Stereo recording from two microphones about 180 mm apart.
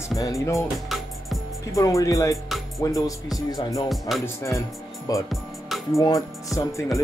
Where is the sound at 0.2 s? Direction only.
15° left (ahead or behind).